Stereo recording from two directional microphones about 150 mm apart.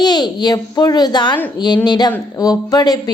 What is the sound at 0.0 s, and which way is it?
A woman's voice, 30° left (ahead or behind).